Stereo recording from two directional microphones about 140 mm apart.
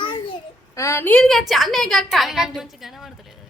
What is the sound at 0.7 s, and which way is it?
A woman's voice, 20° left (ahead or behind).